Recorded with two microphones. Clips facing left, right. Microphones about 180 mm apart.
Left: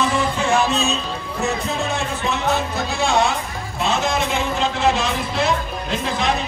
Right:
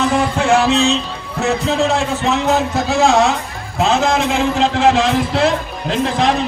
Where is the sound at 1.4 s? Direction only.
90° right.